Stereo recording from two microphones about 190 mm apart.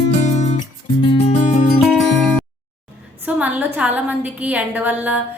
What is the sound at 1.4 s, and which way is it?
Music, 40° left (ahead or behind).